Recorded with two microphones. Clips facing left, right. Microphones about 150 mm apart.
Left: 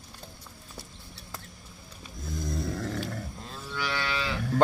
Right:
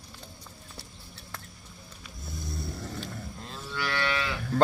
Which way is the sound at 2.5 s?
90° left.